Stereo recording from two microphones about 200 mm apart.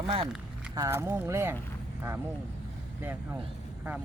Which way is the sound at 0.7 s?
15° right (ahead or behind).